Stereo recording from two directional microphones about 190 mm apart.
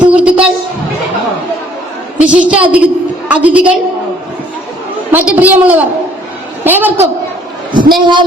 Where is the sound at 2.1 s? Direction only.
5° right (ahead or behind).